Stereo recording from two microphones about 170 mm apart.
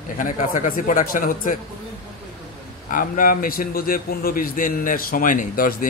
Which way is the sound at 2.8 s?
55° left (ahead or behind).